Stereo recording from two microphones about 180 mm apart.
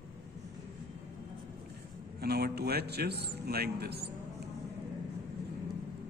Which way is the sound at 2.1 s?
60° right (ahead or behind).